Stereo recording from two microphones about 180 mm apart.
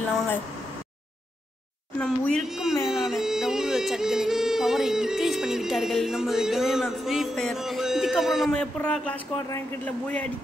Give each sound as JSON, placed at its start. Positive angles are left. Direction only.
{"t": 0.0, "sound": "a sound", "side_deg": 10}
{"t": 2.3, "sound": "speech", "side_deg": 0}
{"t": 2.9, "sound": "music", "side_deg": 0}
{"t": 9.5, "sound": "speech", "side_deg": 10}